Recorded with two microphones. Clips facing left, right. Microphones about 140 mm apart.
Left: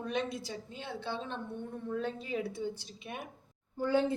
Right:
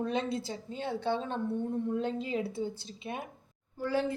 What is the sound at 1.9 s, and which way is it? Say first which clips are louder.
Speech: left 1 dB; 20° right (ahead or behind).